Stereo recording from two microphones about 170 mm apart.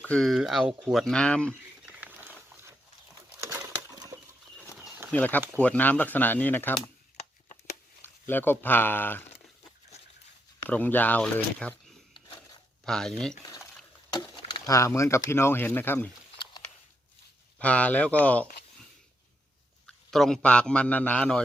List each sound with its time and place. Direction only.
0.0 s speech: 5° left (ahead or behind)
2.0 s a sound: 10° right (ahead or behind)
3.5 s bird: 20° right (ahead or behind)
5.1 s a man's voice: 10° left (ahead or behind)
8.0 s speech: 10° left (ahead or behind)
10.7 s a man's voice: 10° left (ahead or behind)
14.1 s a sound: 25° left (ahead or behind)
14.8 s a man's voice: 15° left (ahead or behind)
17.6 s a man's voice: 10° left (ahead or behind)
19.9 s a man's voice: centre (ahead or behind)